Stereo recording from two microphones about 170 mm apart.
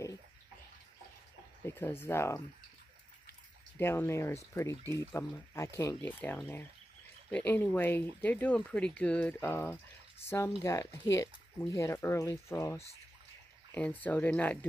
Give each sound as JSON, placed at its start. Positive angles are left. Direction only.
{"t": 1.7, "sound": "speech", "side_deg": 15}
{"t": 3.7, "sound": "speech", "side_deg": 15}